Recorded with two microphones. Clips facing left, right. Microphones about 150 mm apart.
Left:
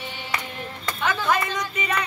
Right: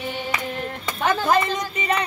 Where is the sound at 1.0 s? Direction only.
35° right (ahead or behind).